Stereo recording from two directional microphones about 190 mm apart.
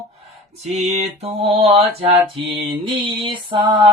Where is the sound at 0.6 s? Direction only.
35° right (ahead or behind).